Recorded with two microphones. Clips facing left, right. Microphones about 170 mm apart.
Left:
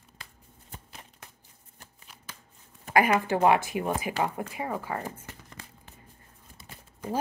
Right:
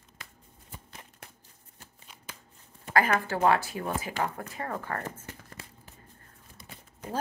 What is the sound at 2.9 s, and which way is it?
A woman's voice, 15° left (ahead or behind).